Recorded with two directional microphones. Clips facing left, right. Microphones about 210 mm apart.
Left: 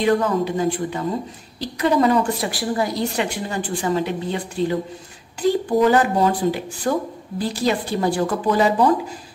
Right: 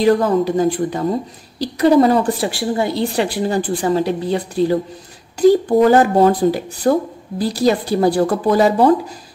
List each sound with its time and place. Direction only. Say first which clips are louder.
0.0 s speech: right 5 dB; 40° right (ahead or behind)